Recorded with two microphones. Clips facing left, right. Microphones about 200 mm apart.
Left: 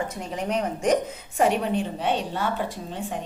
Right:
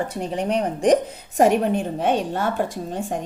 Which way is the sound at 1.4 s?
45° right (ahead or behind).